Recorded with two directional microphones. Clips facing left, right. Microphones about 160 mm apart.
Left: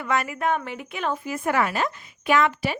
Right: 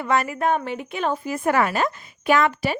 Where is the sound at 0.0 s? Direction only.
35° right (ahead or behind).